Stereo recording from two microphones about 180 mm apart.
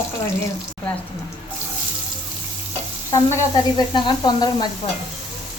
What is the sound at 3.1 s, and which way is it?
Sizzle, 20° left (ahead or behind).